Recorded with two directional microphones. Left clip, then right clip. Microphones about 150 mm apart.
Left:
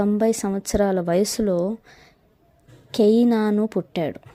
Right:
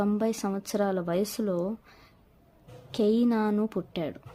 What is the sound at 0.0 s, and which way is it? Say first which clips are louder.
A woman's voice: left 8 dB; 40° left (ahead or behind).